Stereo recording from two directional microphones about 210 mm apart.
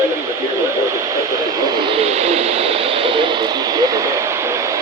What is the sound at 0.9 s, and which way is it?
Vehicle, 15° right (ahead or behind).